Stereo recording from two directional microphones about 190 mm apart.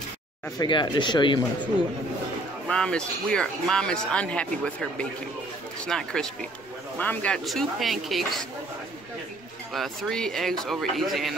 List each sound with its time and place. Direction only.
0.6 s speech: 25° left (ahead or behind)
2.7 s speech: 5° left (ahead or behind)
9.8 s speech: centre (ahead or behind)